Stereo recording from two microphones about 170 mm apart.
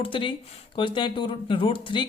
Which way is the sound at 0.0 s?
30° left (ahead or behind).